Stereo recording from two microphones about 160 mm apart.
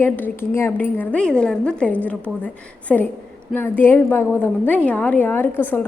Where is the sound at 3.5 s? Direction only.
10° left (ahead or behind).